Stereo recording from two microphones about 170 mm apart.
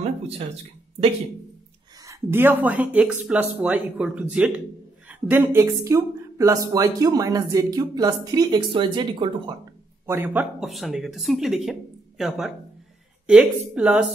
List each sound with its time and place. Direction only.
2.0 s speech: 15° right (ahead or behind)
10.0 s speech: 15° right (ahead or behind)
10.6 s speech: centre (ahead or behind)